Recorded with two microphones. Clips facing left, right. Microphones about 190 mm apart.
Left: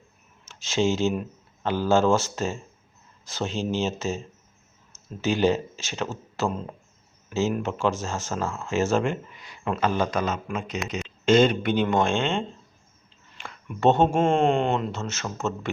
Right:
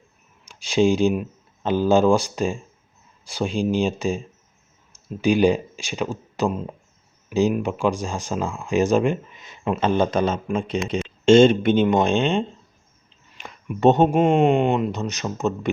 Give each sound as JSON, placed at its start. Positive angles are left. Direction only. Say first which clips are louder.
{"t": 0.4, "sound": "speech", "louder": "right 5 dB", "side_deg": -15}